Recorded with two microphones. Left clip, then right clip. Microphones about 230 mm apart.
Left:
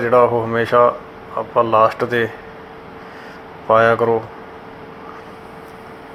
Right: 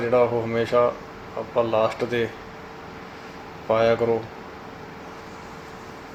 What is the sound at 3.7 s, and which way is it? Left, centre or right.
Speech, centre.